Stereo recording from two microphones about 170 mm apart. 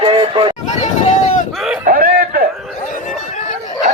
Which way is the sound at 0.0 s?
25° right (ahead or behind).